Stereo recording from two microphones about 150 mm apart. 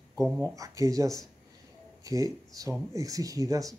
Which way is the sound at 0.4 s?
20° right (ahead or behind).